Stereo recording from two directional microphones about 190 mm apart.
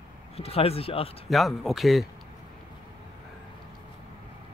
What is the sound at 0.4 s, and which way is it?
Speech, 30° left (ahead or behind).